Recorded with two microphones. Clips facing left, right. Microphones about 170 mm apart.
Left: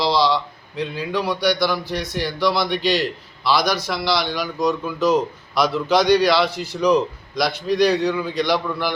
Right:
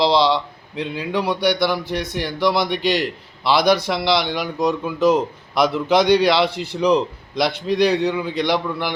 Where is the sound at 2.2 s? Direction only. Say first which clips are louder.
Right 1 dB; 20° right (ahead or behind).